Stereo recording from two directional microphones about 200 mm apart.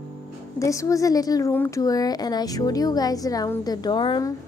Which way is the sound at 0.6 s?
15° left (ahead or behind).